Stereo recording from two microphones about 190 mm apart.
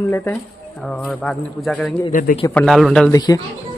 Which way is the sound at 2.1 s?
45° left (ahead or behind).